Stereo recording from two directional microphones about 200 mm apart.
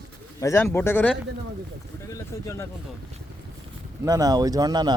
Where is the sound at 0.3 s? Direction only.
15° left (ahead or behind).